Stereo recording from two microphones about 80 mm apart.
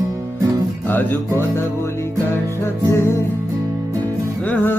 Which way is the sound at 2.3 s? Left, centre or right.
Left.